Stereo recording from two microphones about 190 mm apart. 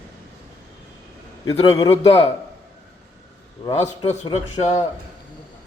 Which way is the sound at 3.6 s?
20° left (ahead or behind).